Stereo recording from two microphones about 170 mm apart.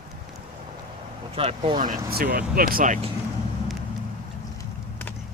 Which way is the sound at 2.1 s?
60° right (ahead or behind).